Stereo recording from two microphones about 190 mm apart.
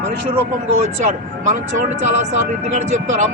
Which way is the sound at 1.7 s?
40° right (ahead or behind).